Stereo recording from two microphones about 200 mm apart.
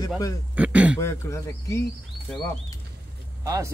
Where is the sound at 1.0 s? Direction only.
15° left (ahead or behind).